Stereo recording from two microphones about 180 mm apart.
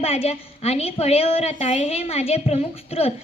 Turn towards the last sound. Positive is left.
turn(degrees=35)  # may be behind; listen again after turning